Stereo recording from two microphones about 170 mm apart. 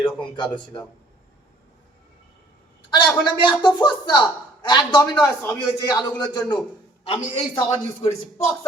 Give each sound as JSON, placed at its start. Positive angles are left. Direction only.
{"t": 0.0, "sound": "speech", "side_deg": 30}
{"t": 2.9, "sound": "a man's voice", "side_deg": 30}
{"t": 5.1, "sound": "a man's voice", "side_deg": 15}